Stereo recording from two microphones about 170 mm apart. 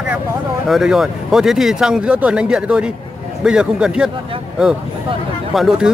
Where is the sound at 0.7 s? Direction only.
Centre (ahead or behind).